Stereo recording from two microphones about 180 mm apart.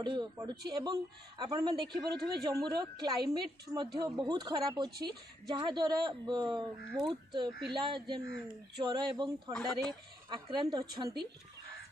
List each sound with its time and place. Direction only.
0.0 s a woman's voice: 25° right (ahead or behind)
9.5 s speech: 5° left (ahead or behind)
10.3 s a woman's voice: 25° right (ahead or behind)